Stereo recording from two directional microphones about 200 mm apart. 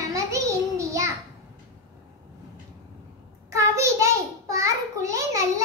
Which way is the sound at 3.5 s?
15° right (ahead or behind).